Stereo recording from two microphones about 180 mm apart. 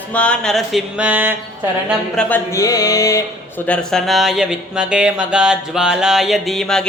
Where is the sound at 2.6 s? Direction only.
20° left (ahead or behind).